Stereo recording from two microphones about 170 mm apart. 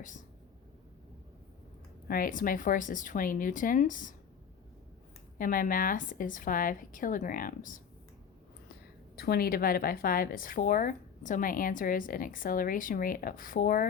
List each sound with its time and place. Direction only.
2.0 s a woman's voice: 55° left (ahead or behind)
5.4 s a woman's voice: 55° left (ahead or behind)
9.1 s speech: 65° left (ahead or behind)